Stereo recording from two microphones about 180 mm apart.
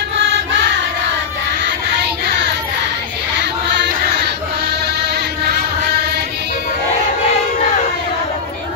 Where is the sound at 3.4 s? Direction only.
70° right (ahead or behind).